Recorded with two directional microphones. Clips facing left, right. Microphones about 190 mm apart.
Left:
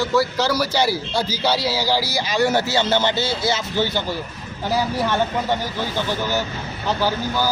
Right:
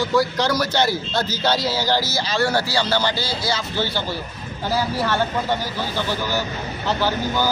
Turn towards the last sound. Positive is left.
turn(degrees=10)  # may be behind; listen again after turning